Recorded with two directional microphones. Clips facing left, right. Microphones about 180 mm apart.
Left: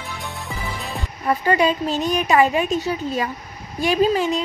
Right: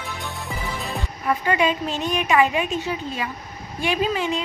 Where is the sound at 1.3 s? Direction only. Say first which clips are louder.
Left 3 dB; 35° left (ahead or behind).